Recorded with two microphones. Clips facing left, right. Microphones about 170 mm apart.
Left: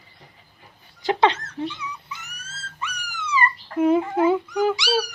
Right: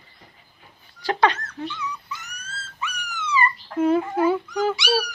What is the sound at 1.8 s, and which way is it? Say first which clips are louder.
Dog: right 3 dB; 10° left (ahead or behind).